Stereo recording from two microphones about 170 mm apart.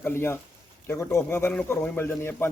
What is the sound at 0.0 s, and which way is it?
A man's voice, 15° left (ahead or behind).